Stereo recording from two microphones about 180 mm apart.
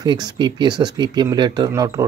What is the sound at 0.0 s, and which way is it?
Speech, 25° right (ahead or behind).